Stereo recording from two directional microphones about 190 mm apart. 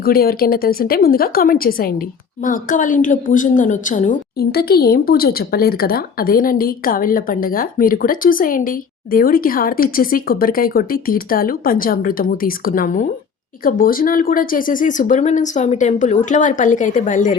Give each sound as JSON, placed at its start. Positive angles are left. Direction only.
{"t": 0.0, "sound": "a woman's voice", "side_deg": 50}